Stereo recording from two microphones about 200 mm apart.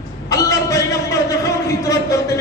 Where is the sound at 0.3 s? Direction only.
15° left (ahead or behind).